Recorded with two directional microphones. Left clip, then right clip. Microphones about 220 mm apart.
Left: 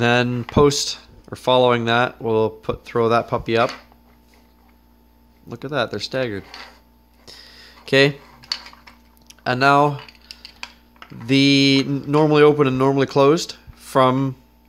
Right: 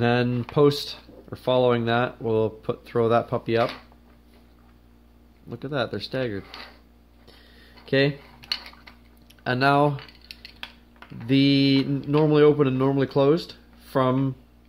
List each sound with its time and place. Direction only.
0.0 s speech: 25° left (ahead or behind)
5.5 s speech: 20° left (ahead or behind)
7.2 s a sound: 30° left (ahead or behind)
8.4 s dishes: 10° right (ahead or behind)
9.3 s speech: 20° left (ahead or behind)
11.2 s speech: 25° left (ahead or behind)